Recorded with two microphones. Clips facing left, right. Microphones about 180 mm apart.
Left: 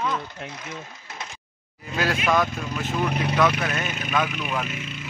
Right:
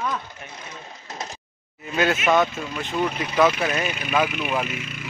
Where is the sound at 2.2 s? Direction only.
Centre (ahead or behind).